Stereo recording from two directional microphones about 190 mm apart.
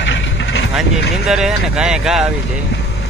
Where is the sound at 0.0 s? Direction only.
70° left (ahead or behind).